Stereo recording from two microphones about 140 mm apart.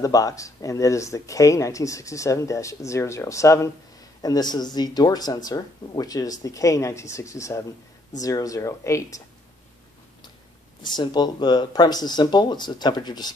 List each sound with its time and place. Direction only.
0.0 s speech: 25° left (ahead or behind)
10.8 s speech: 30° left (ahead or behind)